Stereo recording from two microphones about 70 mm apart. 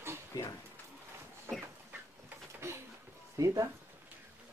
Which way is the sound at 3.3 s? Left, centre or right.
Right.